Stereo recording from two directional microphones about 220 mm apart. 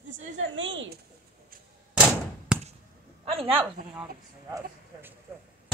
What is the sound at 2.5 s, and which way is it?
Basketball bounce, 5° right (ahead or behind).